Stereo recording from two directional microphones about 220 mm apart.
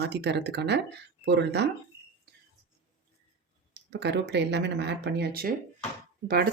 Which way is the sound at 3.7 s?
50° right (ahead or behind).